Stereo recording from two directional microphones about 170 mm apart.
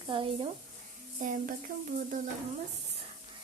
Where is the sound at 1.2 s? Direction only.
50° right (ahead or behind).